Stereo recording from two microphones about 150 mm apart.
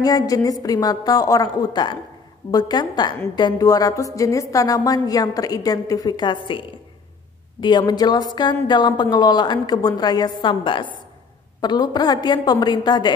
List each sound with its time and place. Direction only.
0.0 s a woman's voice: 25° left (ahead or behind)
7.6 s a woman's voice: 30° left (ahead or behind)